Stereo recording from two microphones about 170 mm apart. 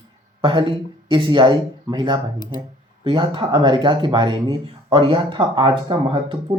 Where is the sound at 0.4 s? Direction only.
30° right (ahead or behind).